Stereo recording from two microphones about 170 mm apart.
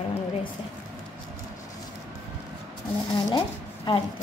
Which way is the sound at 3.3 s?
30° left (ahead or behind).